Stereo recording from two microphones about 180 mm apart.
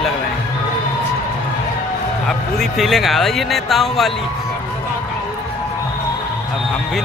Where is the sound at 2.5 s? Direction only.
Centre (ahead or behind).